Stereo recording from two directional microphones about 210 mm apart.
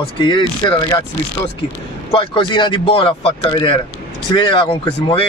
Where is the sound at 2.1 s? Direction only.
25° left (ahead or behind).